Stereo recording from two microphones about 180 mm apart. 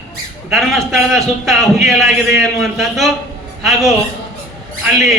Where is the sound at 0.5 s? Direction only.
Centre (ahead or behind).